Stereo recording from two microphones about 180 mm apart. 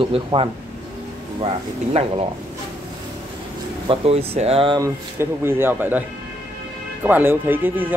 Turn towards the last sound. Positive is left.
turn(degrees=-10)  # may be behind; listen again after turning